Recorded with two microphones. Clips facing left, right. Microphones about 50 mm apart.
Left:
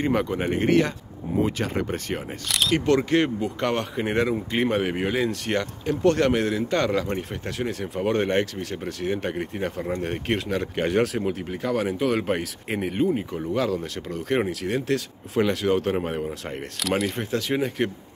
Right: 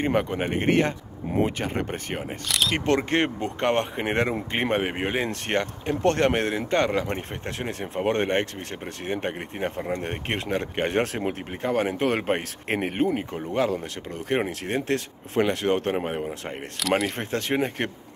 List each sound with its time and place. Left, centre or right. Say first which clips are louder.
0.1 s speech: left 1 dB; right
2.4 s speech: even; centre
2.8 s speech: left 3 dB; right
12.6 s speech: even; right
13.6 s speech: right 2 dB; right
14.5 s speech: left 1 dB; right
15.9 s speech: left 1 dB; right
17.2 s speech: left 1 dB; right